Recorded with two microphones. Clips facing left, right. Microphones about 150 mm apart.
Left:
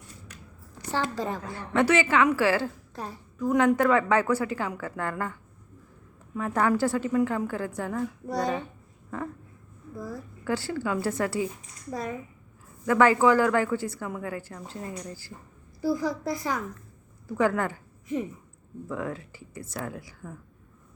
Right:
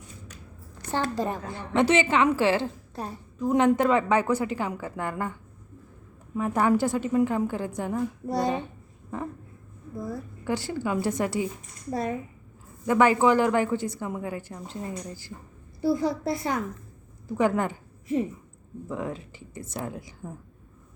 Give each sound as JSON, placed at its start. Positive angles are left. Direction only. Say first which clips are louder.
{"t": 1.1, "sound": "a woman's voice", "louder": "right 2 dB", "side_deg": -15}
{"t": 9.0, "sound": "a sound", "louder": "right 1 dB", "side_deg": -15}
{"t": 9.9, "sound": "a woman's voice", "louder": "right 3 dB", "side_deg": -25}